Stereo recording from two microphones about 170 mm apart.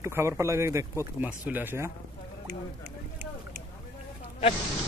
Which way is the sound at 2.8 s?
60° right (ahead or behind).